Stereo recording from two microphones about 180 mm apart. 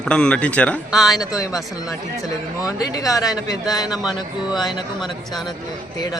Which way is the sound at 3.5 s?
20° left (ahead or behind).